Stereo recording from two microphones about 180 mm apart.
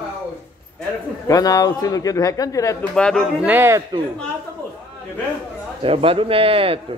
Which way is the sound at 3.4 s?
10° right (ahead or behind).